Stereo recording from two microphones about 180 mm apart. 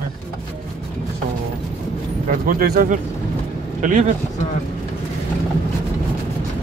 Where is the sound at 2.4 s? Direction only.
55° right (ahead or behind).